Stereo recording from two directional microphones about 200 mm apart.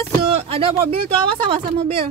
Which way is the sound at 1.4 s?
25° right (ahead or behind).